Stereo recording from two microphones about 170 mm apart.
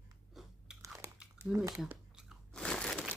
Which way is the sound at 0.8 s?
20° right (ahead or behind).